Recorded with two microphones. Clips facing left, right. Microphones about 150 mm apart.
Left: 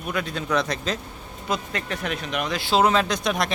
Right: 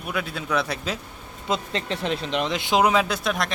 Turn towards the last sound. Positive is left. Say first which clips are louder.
# left 1 dB
turn(degrees=0)  # may be behind; listen again after turning